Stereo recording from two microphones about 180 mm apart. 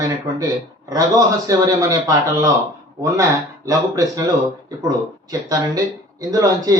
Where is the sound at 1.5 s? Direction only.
20° right (ahead or behind).